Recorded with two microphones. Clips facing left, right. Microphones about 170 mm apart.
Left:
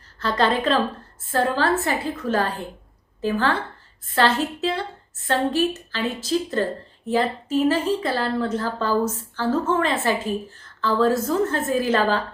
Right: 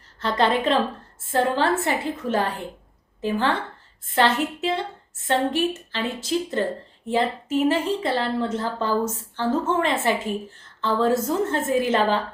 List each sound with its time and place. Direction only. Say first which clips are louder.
0.2 s a woman's voice: even; 20° right (ahead or behind)